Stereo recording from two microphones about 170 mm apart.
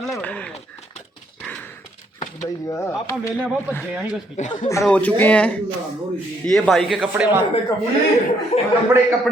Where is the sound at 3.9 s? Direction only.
10° right (ahead or behind).